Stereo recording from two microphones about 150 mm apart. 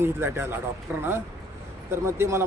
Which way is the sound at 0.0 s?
15° right (ahead or behind).